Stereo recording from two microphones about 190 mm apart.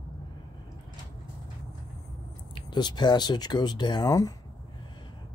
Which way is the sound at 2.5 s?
25° left (ahead or behind).